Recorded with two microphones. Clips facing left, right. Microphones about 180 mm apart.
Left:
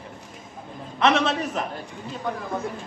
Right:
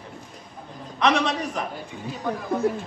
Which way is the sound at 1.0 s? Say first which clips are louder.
Left 1 dB; 5° left (ahead or behind).